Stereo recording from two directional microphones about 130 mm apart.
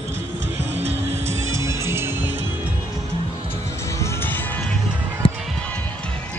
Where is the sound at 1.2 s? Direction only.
20° right (ahead or behind).